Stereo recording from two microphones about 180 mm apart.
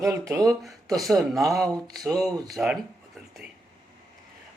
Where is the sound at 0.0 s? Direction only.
15° right (ahead or behind).